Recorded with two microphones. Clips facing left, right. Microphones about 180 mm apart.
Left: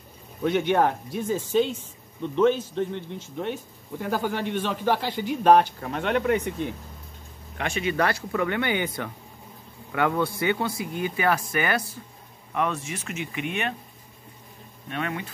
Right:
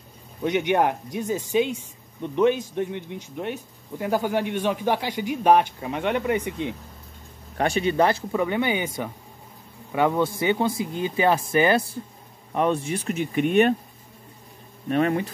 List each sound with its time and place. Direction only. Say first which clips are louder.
0.5 s speech: even; 15° right (ahead or behind)
7.5 s speech: right 5 dB; 35° right (ahead or behind)
7.9 s speech: right 4 dB; 20° right (ahead or behind); by 13.7 s 40° right (ahead or behind)
14.9 s speech: right 9 dB; 40° right (ahead or behind)